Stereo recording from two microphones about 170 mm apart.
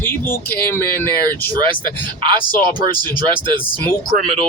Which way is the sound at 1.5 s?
25° right (ahead or behind).